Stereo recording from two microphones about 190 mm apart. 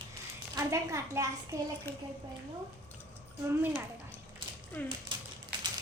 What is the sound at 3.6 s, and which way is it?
Speech, 10° right (ahead or behind).